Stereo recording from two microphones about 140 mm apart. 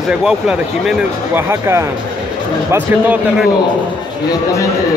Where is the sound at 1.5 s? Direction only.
20° right (ahead or behind).